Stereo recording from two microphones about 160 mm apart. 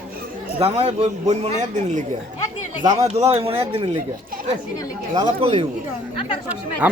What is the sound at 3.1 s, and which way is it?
Speech, 40° right (ahead or behind).